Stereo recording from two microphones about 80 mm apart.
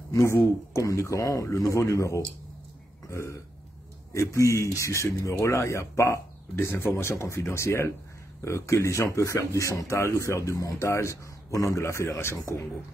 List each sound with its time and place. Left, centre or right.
0.1 s speech: left